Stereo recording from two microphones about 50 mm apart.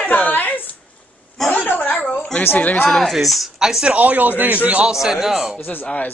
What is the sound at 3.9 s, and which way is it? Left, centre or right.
Speech, right.